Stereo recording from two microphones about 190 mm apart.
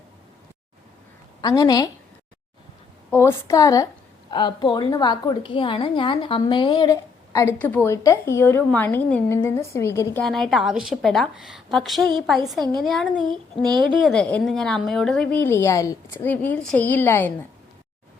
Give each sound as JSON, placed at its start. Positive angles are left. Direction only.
{"t": 1.4, "sound": "a woman's voice", "side_deg": 20}
{"t": 3.1, "sound": "a woman's voice", "side_deg": 15}
{"t": 10.2, "sound": "a woman's voice", "side_deg": 0}